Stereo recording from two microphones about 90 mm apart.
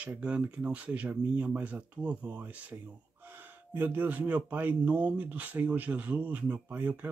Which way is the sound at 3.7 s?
20° right (ahead or behind).